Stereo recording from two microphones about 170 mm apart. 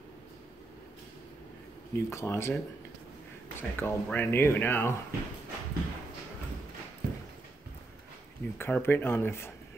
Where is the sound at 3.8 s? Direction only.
10° left (ahead or behind).